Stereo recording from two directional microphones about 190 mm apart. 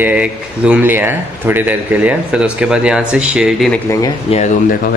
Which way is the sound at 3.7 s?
15° left (ahead or behind).